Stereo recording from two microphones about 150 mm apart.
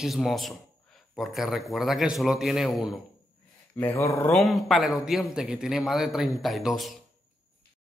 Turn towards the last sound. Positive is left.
turn(degrees=0)  # may be behind; listen again after turning